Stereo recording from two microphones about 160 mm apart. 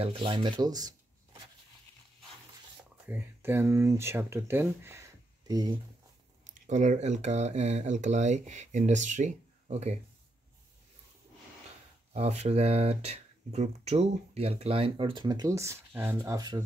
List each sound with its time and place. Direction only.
0.0 s speech: 35° right (ahead or behind)
3.1 s speech: 10° right (ahead or behind)
6.5 s speech: 50° right (ahead or behind)
12.1 s speech: 45° right (ahead or behind); by 16.6 s 25° right (ahead or behind)